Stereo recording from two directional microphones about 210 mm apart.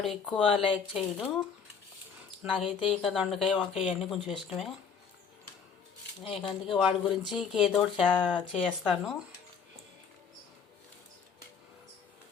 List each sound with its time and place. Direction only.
0.0 s speech: centre (ahead or behind)
6.2 s speech: 25° left (ahead or behind)
6.7 s speech: centre (ahead or behind)